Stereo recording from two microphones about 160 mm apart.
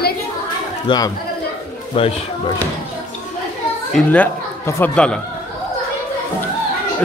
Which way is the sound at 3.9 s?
10° left (ahead or behind).